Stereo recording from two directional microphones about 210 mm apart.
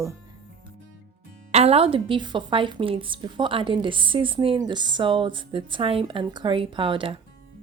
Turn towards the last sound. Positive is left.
turn(degrees=-25)  # may be behind; listen again after turning